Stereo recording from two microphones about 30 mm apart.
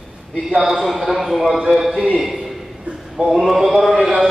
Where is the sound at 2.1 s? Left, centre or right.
Centre.